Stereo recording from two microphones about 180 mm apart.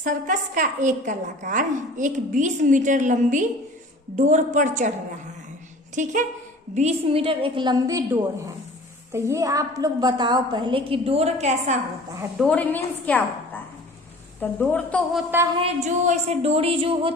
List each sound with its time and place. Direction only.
0.0 s a woman's voice: 45° right (ahead or behind)
5.9 s a woman's voice: 45° right (ahead or behind)
12.4 s a woman's voice: 5° left (ahead or behind)
15.5 s a woman's voice: 35° right (ahead or behind)